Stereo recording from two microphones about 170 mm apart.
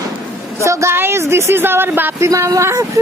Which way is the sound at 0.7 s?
15° right (ahead or behind).